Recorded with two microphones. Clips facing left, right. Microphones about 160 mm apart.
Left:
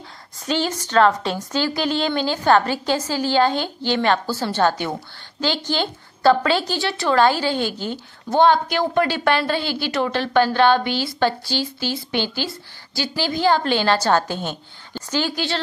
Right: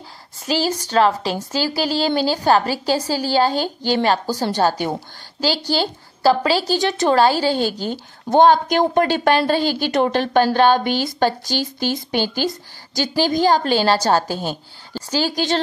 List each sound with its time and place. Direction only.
0.5 s a woman's voice: 35° right (ahead or behind)
6.7 s a woman's voice: 45° right (ahead or behind)